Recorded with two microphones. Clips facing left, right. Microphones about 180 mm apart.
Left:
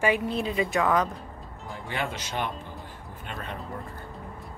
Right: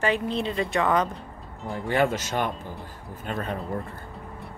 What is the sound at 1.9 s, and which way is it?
Speech, 45° right (ahead or behind).